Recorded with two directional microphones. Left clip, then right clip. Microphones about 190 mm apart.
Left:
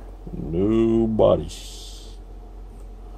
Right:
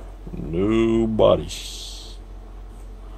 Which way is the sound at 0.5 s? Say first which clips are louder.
Even; 20° left (ahead or behind).